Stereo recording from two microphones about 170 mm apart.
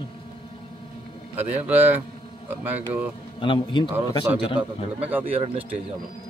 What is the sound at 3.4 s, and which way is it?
A man's voice, 30° left (ahead or behind).